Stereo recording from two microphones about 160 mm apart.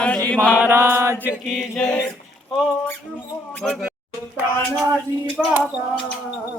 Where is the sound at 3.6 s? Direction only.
Centre (ahead or behind).